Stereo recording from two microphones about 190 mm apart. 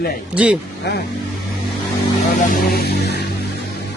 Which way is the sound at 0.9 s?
65° left (ahead or behind).